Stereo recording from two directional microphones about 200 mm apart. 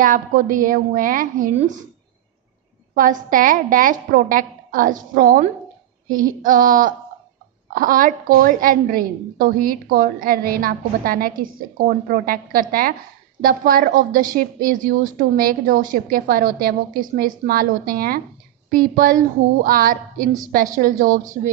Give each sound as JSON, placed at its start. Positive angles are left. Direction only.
{"t": 0.0, "sound": "a woman's voice", "side_deg": -40}
{"t": 2.9, "sound": "a woman's voice", "side_deg": -45}